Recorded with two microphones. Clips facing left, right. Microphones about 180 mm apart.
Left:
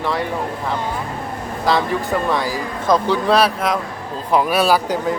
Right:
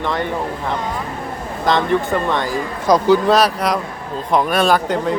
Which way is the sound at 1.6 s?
5° left (ahead or behind).